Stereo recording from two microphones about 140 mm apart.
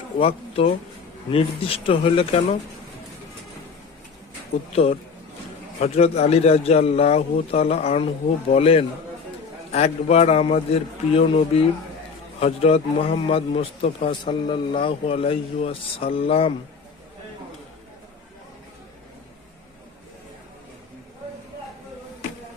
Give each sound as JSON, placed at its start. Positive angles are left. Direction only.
{"t": 0.2, "sound": "a man's voice", "side_deg": 45}
{"t": 4.7, "sound": "a man's voice", "side_deg": 45}